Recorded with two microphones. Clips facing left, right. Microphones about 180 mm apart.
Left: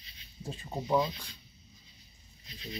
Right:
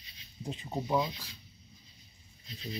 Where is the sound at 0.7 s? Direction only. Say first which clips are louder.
Left 2 dB; 5° right (ahead or behind).